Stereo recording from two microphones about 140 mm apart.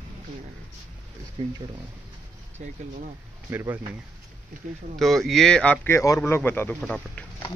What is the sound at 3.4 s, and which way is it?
Speech, 15° right (ahead or behind).